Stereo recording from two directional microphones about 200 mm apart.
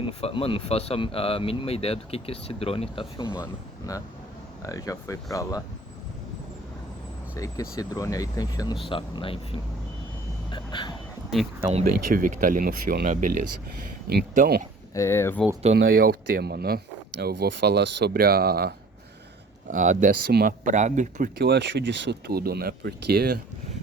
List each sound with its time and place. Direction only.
0.0 s speech: 30° left (ahead or behind)
7.3 s speech: 15° left (ahead or behind)
11.7 s speech: 40° right (ahead or behind)
14.9 s speech: 15° left (ahead or behind)
15.7 s speech: 55° right (ahead or behind)
19.7 s speech: 40° right (ahead or behind)
21.3 s speech: 55° right (ahead or behind)